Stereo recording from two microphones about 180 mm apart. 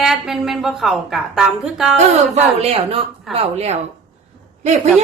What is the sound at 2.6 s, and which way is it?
A woman's voice, 35° right (ahead or behind).